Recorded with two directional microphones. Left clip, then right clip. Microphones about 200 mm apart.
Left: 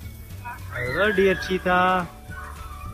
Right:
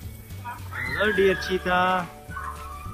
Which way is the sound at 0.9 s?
5° right (ahead or behind).